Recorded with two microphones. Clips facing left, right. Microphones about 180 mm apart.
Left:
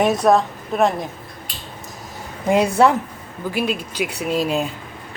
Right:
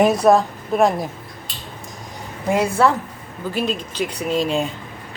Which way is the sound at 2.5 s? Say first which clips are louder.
Left 2 dB; 20° left (ahead or behind).